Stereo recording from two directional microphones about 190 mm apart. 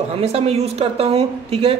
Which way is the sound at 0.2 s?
30° right (ahead or behind).